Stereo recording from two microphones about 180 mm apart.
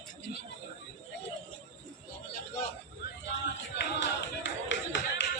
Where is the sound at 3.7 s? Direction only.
80° left.